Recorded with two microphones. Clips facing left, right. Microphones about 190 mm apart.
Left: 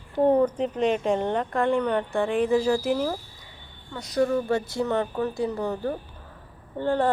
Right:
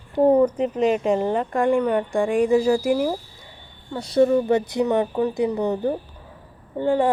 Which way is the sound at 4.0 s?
30° right (ahead or behind).